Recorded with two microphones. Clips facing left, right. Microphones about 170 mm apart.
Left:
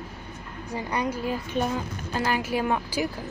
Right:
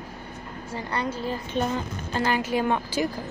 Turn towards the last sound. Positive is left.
turn(degrees=5)  # may be behind; listen again after turning